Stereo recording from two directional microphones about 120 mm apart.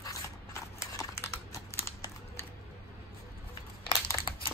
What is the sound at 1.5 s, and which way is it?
Crumpling, 25° left (ahead or behind).